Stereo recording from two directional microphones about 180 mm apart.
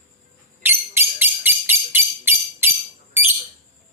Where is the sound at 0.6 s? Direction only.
10° right (ahead or behind).